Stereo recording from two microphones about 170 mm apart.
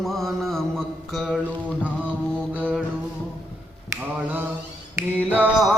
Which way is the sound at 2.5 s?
10° right (ahead or behind).